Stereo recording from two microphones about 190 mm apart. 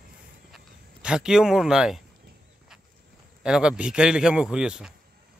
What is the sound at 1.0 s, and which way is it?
Speech, 5° right (ahead or behind).